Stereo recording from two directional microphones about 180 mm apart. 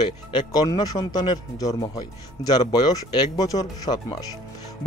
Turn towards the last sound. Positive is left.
turn(degrees=20)  # may be behind; listen again after turning